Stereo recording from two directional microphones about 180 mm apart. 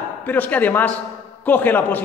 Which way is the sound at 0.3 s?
10° left (ahead or behind).